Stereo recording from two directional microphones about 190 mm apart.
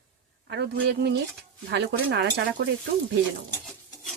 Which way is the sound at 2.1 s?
55° right (ahead or behind).